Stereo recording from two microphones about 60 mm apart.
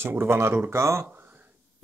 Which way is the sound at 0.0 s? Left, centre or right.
Right.